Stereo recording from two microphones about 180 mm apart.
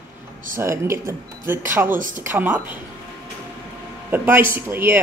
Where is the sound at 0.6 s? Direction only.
15° right (ahead or behind).